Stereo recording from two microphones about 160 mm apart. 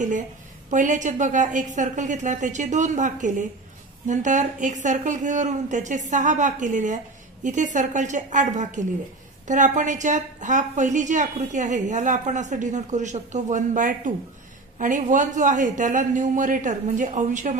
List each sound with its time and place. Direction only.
0.7 s a woman's voice: 50° right (ahead or behind)